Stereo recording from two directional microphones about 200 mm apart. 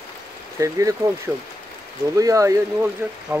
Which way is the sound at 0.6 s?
15° right (ahead or behind).